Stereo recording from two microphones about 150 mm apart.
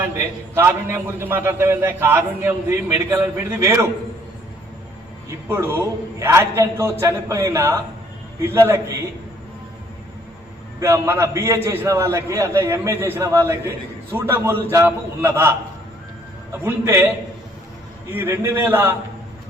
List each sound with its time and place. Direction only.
0.5 s a man's voice: 15° right (ahead or behind)
5.3 s a man's voice: 20° right (ahead or behind)
10.8 s a man's voice: 20° right (ahead or behind)
18.1 s a man's voice: 15° right (ahead or behind)